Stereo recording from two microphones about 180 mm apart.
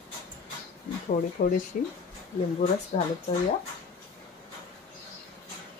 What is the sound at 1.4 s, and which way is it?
Speech, 50° left (ahead or behind).